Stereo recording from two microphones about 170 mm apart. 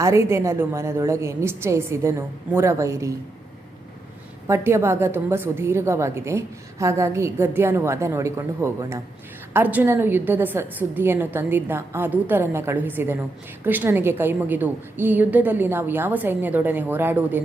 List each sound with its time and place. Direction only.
0.0 s a woman's voice: 15° right (ahead or behind)
4.4 s a woman's voice: 15° right (ahead or behind)